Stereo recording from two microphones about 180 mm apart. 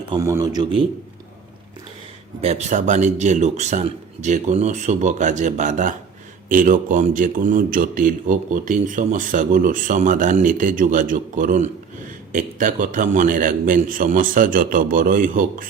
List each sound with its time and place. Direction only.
0.2 s a man's voice: 15° right (ahead or behind)
2.4 s a man's voice: 40° right (ahead or behind)